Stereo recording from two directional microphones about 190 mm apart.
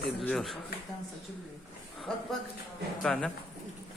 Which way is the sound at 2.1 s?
5° left (ahead or behind).